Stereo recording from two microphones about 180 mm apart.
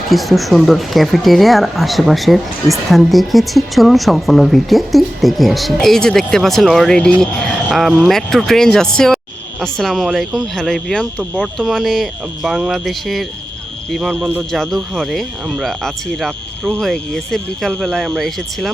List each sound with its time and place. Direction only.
0.1 s speech: centre (ahead or behind)